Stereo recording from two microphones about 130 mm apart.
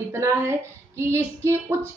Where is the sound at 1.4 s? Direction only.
20° right (ahead or behind).